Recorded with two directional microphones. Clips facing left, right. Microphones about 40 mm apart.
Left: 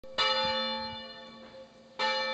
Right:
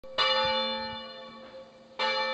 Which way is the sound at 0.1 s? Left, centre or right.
Centre.